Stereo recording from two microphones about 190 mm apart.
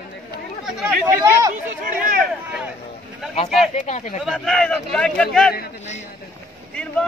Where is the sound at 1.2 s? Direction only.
15° right (ahead or behind).